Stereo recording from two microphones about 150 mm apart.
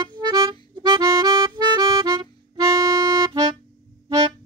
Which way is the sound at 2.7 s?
20° right (ahead or behind).